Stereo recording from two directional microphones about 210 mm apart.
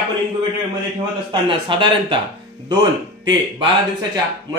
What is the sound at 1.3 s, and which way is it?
Speech, 25° right (ahead or behind).